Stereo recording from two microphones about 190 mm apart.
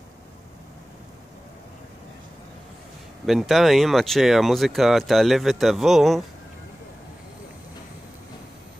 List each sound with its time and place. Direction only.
3.3 s speech: centre (ahead or behind)